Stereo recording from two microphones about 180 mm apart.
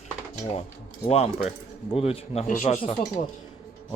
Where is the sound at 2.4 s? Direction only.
45° left (ahead or behind).